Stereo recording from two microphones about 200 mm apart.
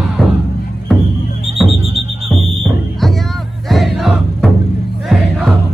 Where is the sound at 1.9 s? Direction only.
30° right (ahead or behind).